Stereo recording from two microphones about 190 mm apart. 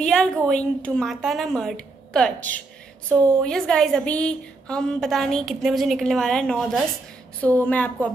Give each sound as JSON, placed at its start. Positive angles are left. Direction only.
{"t": 0.0, "sound": "a woman's voice", "side_deg": 5}